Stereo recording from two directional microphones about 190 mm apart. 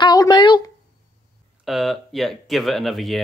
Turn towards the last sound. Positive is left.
turn(degrees=0)  # may be behind; listen again after turning